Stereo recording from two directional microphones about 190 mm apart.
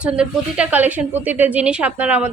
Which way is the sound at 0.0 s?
5° right (ahead or behind).